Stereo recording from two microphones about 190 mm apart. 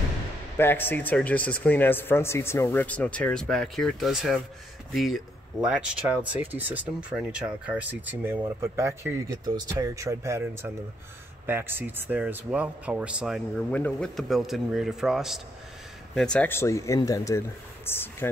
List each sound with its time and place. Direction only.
0.6 s speech: 10° left (ahead or behind)